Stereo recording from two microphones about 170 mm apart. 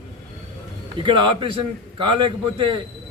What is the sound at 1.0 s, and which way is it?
A man's voice, 30° right (ahead or behind).